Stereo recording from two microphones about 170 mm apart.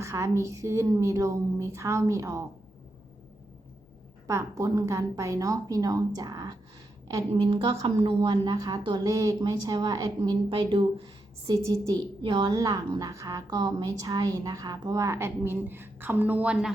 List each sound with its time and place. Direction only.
0.0 s a woman's voice: 15° right (ahead or behind)
4.3 s a woman's voice: 20° right (ahead or behind)